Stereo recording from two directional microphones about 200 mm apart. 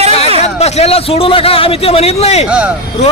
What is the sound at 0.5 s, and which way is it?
A man's voice, 30° left (ahead or behind).